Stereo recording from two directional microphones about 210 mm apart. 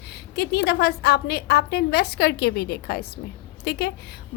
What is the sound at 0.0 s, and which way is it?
A woman's voice, 50° left (ahead or behind).